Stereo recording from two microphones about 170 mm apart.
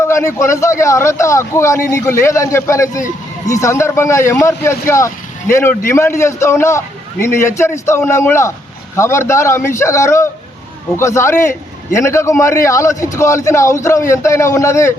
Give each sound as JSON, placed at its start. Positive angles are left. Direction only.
{"t": 0.0, "sound": "speech", "side_deg": 15}